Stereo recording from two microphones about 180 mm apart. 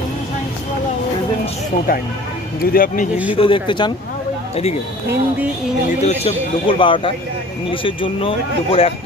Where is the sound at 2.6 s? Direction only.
55° left (ahead or behind).